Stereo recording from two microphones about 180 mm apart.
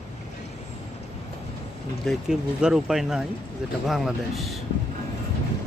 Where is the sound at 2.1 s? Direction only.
5° right (ahead or behind).